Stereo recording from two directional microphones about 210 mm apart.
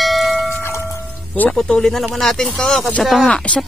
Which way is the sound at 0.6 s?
10° left (ahead or behind).